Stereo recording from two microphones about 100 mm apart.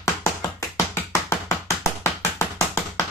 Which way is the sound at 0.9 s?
25° left (ahead or behind).